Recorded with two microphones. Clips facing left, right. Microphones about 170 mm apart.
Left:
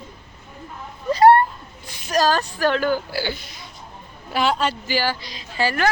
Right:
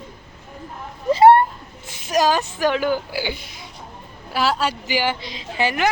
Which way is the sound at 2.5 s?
15° right (ahead or behind).